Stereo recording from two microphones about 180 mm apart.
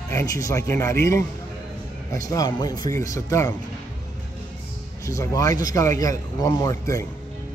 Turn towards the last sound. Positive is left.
turn(degrees=20)  # may be behind; listen again after turning